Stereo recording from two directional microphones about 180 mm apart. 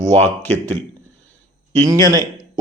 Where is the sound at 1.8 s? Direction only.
20° right (ahead or behind).